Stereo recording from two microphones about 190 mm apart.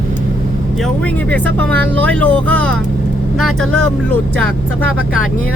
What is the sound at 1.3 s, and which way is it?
Speech, 10° left (ahead or behind).